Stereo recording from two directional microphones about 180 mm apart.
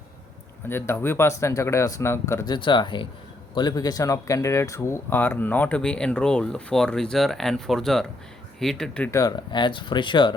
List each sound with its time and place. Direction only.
0.7 s speech: 15° left (ahead or behind)
9.1 s speech: 20° left (ahead or behind)